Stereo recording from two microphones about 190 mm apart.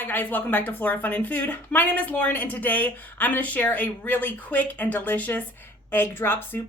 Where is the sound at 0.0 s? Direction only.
10° left (ahead or behind).